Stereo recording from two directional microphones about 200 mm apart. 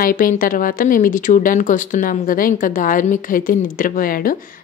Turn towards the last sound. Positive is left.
turn(degrees=45)  # may be behind; listen again after turning